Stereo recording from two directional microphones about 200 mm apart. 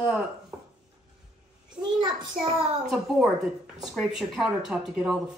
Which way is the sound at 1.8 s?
25° right (ahead or behind).